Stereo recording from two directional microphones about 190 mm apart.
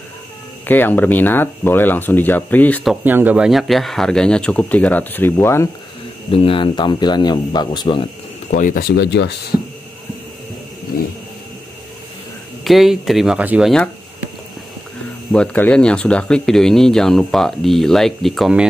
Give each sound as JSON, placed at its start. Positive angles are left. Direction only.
{"t": 0.7, "sound": "speech", "side_deg": 10}
{"t": 6.3, "sound": "a man's voice", "side_deg": 30}
{"t": 8.5, "sound": "speech", "side_deg": 45}
{"t": 12.6, "sound": "speech", "side_deg": 0}
{"t": 15.3, "sound": "speech", "side_deg": 5}